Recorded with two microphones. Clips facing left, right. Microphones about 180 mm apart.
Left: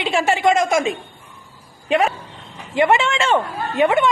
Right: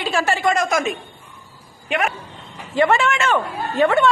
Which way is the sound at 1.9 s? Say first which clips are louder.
Left 5 dB; 30° left (ahead or behind).